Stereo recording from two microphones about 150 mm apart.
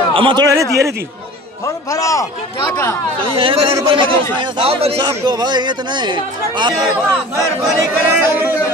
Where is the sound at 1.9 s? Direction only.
20° left (ahead or behind).